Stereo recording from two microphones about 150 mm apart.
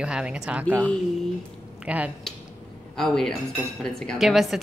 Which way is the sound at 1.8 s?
10° right (ahead or behind).